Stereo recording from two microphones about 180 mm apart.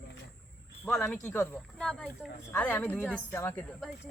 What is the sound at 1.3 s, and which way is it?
A woman's voice, 15° left (ahead or behind).